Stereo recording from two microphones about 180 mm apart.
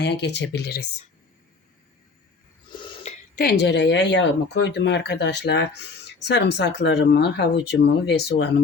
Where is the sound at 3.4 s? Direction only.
65° left (ahead or behind).